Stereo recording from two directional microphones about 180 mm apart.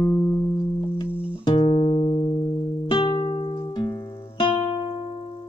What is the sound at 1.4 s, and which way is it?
Music, 30° left (ahead or behind).